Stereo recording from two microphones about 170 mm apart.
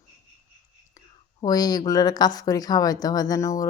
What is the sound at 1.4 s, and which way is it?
Speech, 20° left (ahead or behind).